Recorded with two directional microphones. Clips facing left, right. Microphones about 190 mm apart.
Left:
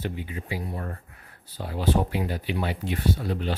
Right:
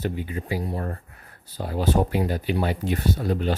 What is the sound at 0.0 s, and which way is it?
Speech, 40° right (ahead or behind).